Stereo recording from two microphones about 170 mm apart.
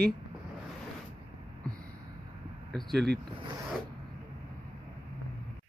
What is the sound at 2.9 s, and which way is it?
Speech, 75° right (ahead or behind).